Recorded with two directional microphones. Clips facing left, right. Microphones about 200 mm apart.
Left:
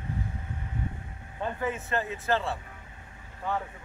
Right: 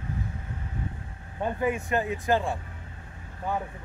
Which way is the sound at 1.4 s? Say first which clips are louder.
Right 4 dB; 15° right (ahead or behind).